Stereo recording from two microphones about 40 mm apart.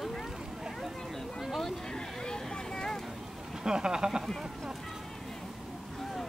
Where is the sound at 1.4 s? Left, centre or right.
Centre.